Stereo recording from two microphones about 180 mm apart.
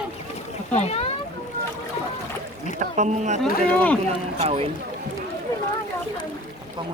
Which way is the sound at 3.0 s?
40° right (ahead or behind).